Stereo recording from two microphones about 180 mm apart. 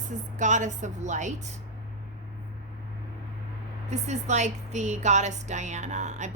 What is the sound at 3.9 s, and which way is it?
A woman's voice, 40° right (ahead or behind).